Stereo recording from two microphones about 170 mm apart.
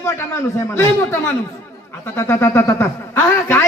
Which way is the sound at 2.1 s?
15° left (ahead or behind).